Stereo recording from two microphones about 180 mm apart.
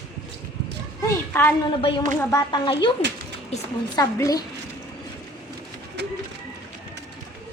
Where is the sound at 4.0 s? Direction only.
20° left (ahead or behind).